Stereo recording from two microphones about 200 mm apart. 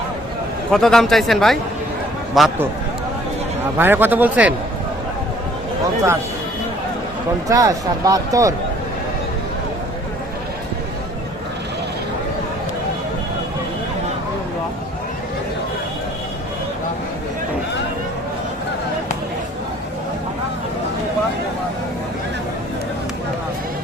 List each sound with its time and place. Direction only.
0.7 s speech: centre (ahead or behind)
3.8 s a man's voice: 10° right (ahead or behind)
7.4 s a man's voice: 15° right (ahead or behind)